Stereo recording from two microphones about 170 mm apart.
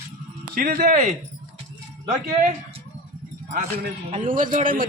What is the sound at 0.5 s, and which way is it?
Speech, 60° right (ahead or behind).